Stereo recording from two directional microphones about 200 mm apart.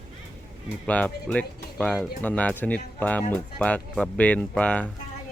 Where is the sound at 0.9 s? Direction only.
5° left (ahead or behind).